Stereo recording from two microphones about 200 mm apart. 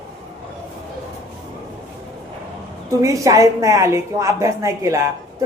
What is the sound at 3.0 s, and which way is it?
A woman's voice, 15° right (ahead or behind).